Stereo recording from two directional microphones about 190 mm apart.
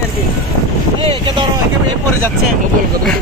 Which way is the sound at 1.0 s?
25° right (ahead or behind).